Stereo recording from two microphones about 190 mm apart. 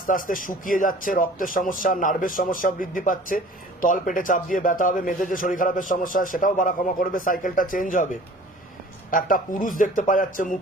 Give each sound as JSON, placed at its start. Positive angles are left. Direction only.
{"t": 0.1, "sound": "speech", "side_deg": 45}
{"t": 9.0, "sound": "speech", "side_deg": 45}